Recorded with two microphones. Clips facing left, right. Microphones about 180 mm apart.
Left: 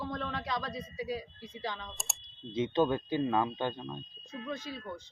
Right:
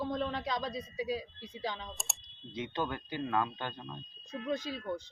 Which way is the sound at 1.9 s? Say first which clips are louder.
Right 1 dB; centre (ahead or behind).